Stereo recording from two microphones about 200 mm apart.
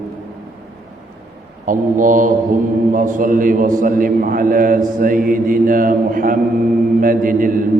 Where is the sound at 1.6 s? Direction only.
40° right (ahead or behind).